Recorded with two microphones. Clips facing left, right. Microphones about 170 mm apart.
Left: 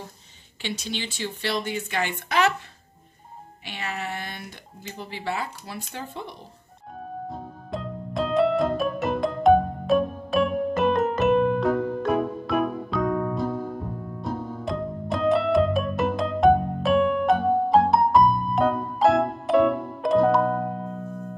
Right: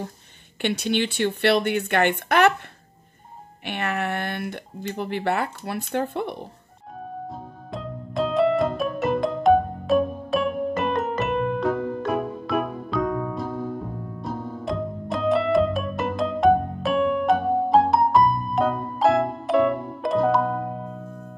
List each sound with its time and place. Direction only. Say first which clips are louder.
0.6 s speech: right 8 dB; 60° right (ahead or behind)
3.6 s speech: right 6 dB; 60° right (ahead or behind)
7.2 s music: left 1 dB; centre (ahead or behind)